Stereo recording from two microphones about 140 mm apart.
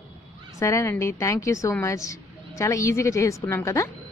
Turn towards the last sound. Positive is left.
turn(degrees=20)  # may be behind; listen again after turning